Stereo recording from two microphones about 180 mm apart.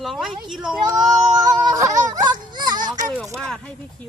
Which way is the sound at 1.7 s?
20° right (ahead or behind).